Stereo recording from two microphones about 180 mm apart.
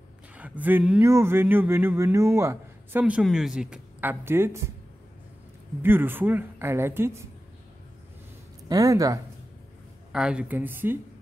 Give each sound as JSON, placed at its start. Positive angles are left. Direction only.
{"t": 0.3, "sound": "speech", "side_deg": -10}
{"t": 5.8, "sound": "speech", "side_deg": -10}
{"t": 8.6, "sound": "speech", "side_deg": -20}
{"t": 10.1, "sound": "speech", "side_deg": -5}